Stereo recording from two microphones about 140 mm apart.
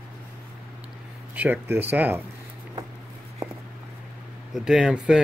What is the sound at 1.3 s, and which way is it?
Speech, 10° right (ahead or behind).